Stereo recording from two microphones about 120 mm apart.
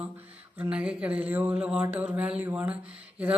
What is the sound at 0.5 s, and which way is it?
Speech, 10° right (ahead or behind).